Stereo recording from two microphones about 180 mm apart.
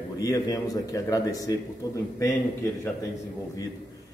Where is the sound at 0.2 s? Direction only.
20° left (ahead or behind).